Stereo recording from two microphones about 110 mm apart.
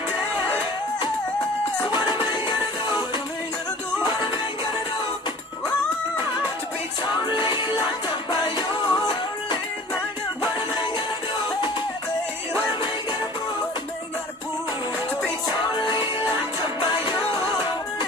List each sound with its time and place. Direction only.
1.9 s music: 45° left (ahead or behind)
7.3 s music: 45° left (ahead or behind)
16.2 s music: 40° left (ahead or behind)